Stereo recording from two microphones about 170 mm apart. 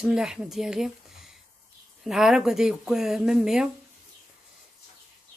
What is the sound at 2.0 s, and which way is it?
Speech, 5° right (ahead or behind).